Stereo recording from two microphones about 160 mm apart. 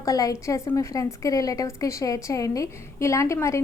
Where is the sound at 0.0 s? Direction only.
20° left (ahead or behind).